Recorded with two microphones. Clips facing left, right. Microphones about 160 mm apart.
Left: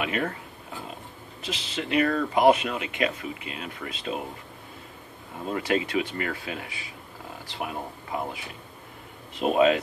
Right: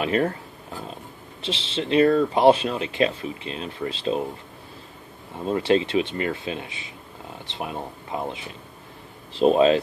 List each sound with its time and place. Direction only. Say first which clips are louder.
0.0 s speech: right 6 dB; 35° right (ahead or behind)
1.4 s speech: right 4 dB; 30° right (ahead or behind)
5.5 s speech: right 5 dB; 25° right (ahead or behind)